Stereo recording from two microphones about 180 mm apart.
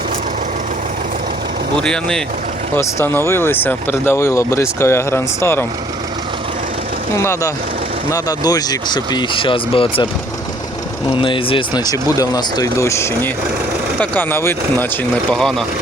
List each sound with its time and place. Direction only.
1.8 s speech: 5° left (ahead or behind)
7.2 s speech: 15° left (ahead or behind)
11.1 s speech: 30° left (ahead or behind); by 15.6 s 5° left (ahead or behind)